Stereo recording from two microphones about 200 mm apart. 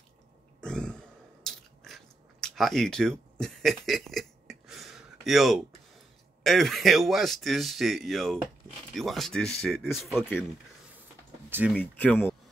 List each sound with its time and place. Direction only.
0.6 s biting: 5° left (ahead or behind)
6.4 s speech: centre (ahead or behind)
11.7 s speech: 10° left (ahead or behind)